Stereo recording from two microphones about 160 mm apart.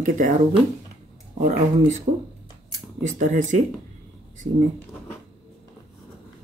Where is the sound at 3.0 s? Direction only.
50° right (ahead or behind).